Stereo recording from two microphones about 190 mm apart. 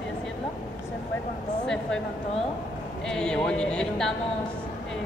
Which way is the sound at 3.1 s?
5° left (ahead or behind).